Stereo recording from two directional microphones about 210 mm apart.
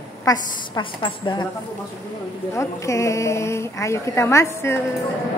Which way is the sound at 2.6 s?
15° left (ahead or behind).